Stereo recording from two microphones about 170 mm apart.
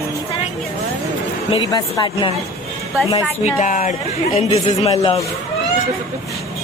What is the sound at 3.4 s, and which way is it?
A woman's voice, 45° left (ahead or behind).